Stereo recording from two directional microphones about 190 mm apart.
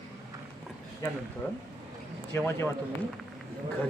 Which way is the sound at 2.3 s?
10° left (ahead or behind).